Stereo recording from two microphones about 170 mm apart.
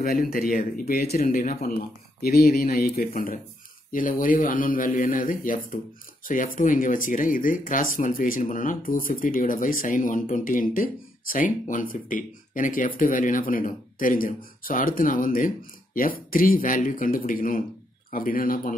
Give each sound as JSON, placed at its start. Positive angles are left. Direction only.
{"t": 0.0, "sound": "speech", "side_deg": 60}
{"t": 2.2, "sound": "speech", "side_deg": 65}